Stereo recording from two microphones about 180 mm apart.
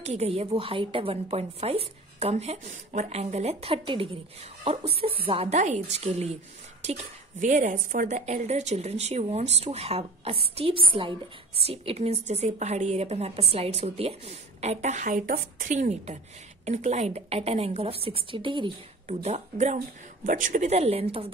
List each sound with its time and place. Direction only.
0.0 s a woman's voice: 35° right (ahead or behind)
19.0 s a woman's voice: 40° right (ahead or behind)